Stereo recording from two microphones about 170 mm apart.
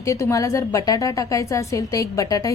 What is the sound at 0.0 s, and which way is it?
A woman's voice, 15° left (ahead or behind).